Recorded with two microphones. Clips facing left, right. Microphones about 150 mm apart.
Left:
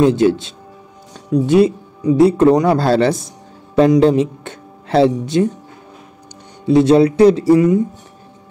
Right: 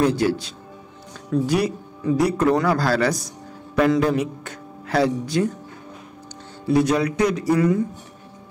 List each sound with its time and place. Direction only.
0.0 s speech: 20° left (ahead or behind)
6.6 s speech: 25° left (ahead or behind)